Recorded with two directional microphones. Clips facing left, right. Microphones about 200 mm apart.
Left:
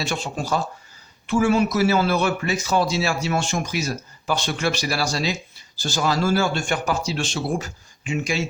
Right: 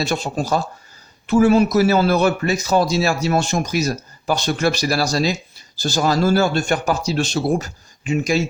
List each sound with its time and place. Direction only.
0.0 s a man's voice: 40° right (ahead or behind)